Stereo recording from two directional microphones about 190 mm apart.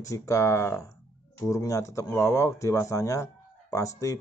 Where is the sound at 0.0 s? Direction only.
15° left (ahead or behind).